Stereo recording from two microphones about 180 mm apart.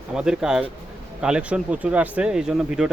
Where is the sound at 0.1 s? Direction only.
5° right (ahead or behind).